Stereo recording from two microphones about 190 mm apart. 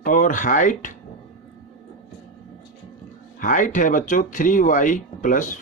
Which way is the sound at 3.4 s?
45° left (ahead or behind).